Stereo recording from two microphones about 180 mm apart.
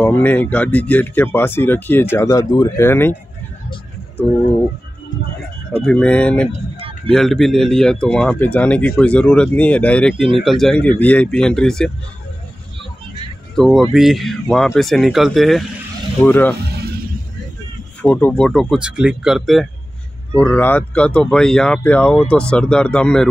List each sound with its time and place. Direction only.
0.0 s speech: 10° left (ahead or behind)
5.8 s speech: 5° left (ahead or behind)
6.5 s vehicle: 30° right (ahead or behind)
7.1 s speech: centre (ahead or behind)
13.6 s speech: centre (ahead or behind)
18.0 s speech: 10° left (ahead or behind)